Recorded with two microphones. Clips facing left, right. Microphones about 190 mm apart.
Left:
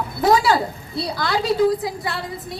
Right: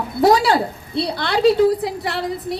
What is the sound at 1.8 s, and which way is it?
Speech, 70° right (ahead or behind).